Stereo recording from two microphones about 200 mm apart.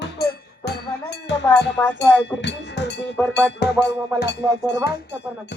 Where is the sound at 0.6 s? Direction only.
60° left (ahead or behind).